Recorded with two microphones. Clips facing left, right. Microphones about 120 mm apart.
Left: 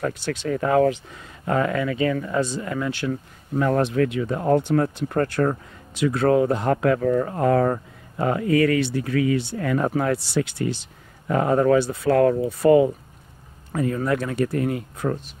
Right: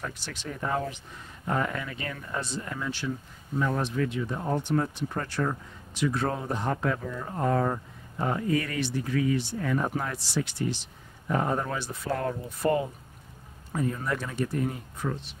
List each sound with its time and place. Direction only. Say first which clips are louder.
0.0 s speech: left 11 dB; 75° left (ahead or behind); by 5.6 s 55° left (ahead or behind)
6.0 s speech: left 10 dB; 75° left (ahead or behind)
11.2 s speech: left 9 dB; 90° left
13.7 s speech: left 7 dB; 80° left
15.0 s speech: left 7 dB; 45° left (ahead or behind)